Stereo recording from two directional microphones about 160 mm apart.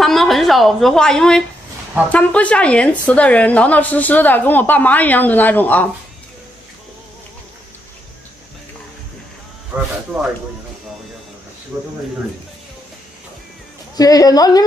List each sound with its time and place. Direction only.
0.0 s a woman's voice: centre (ahead or behind)
9.7 s speech: 10° right (ahead or behind)
11.7 s speech: 25° right (ahead or behind)
13.9 s a woman's voice: 20° left (ahead or behind)